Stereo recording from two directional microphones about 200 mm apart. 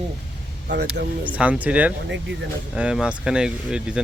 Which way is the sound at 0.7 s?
60° right (ahead or behind).